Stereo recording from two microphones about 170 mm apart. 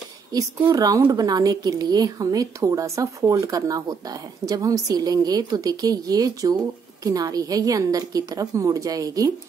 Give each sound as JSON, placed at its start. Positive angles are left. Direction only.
{"t": 0.7, "sound": "a woman's voice", "side_deg": -20}